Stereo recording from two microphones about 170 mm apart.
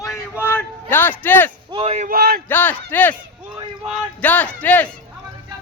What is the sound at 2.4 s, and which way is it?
A man's voice, 10° left (ahead or behind).